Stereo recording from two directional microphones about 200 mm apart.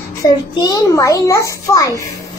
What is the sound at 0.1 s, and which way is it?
A child's voice, 20° left (ahead or behind).